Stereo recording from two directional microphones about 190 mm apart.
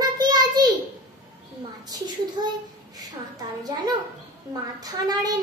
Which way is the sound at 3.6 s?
20° right (ahead or behind).